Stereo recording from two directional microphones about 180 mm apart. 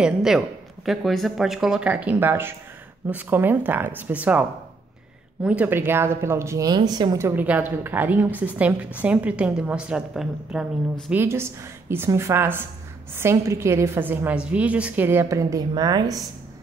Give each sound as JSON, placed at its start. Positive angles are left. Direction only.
{"t": 0.0, "sound": "a woman's voice", "side_deg": -5}